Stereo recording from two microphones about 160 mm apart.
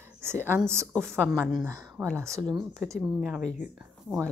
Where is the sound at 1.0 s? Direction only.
5° left (ahead or behind).